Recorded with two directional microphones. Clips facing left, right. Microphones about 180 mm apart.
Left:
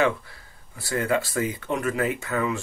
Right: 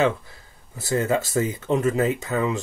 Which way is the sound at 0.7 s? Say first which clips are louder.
Right 2 dB; 25° right (ahead or behind).